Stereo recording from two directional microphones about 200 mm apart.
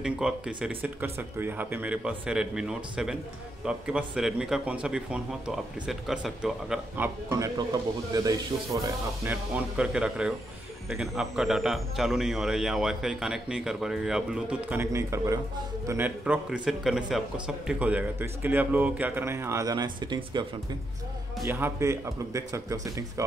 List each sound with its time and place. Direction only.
0.0 s speech: 5° right (ahead or behind)
9.2 s a man's voice: 10° right (ahead or behind)
21.5 s a man's voice: 10° right (ahead or behind)